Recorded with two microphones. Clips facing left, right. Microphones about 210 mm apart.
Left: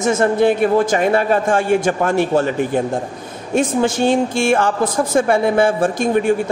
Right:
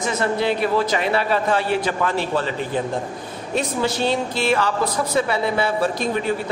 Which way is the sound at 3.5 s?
50° left (ahead or behind).